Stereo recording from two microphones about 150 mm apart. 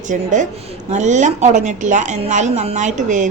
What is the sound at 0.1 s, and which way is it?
A woman's voice, 55° right (ahead or behind).